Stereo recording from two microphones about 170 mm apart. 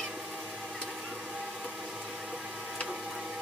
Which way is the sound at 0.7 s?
Centre (ahead or behind).